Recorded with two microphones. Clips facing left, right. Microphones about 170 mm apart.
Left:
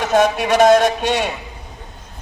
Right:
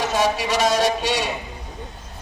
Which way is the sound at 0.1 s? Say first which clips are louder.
Left 6 dB; 55° left (ahead or behind).